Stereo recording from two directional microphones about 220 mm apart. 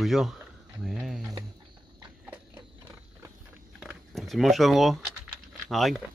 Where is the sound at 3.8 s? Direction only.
Centre (ahead or behind).